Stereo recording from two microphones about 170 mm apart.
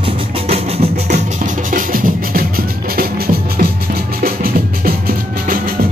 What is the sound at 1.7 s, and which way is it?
Music, 55° right (ahead or behind).